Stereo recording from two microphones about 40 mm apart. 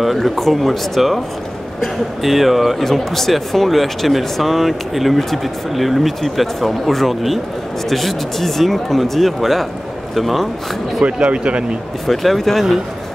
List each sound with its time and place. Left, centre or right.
0.0 s speech: centre
11.1 s speech: right
12.1 s speech: centre